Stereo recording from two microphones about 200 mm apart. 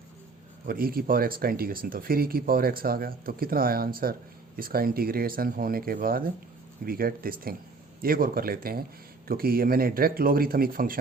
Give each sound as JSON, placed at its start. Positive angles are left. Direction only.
{"t": 0.7, "sound": "speech", "side_deg": -50}